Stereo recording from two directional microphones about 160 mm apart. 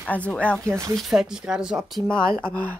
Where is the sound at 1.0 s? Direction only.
Centre (ahead or behind).